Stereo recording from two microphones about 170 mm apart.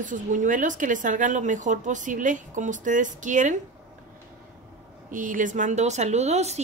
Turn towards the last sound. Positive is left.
turn(degrees=-40)  # may be behind; listen again after turning